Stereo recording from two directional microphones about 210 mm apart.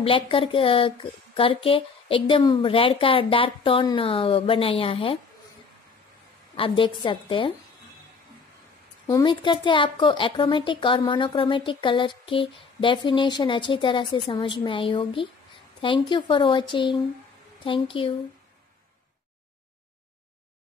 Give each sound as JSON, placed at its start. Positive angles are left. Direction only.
{"t": 0.0, "sound": "speech", "side_deg": 25}
{"t": 6.5, "sound": "speech", "side_deg": 25}
{"t": 9.0, "sound": "speech", "side_deg": 20}